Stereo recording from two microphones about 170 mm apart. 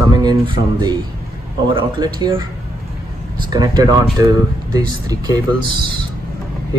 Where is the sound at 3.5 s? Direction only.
25° right (ahead or behind).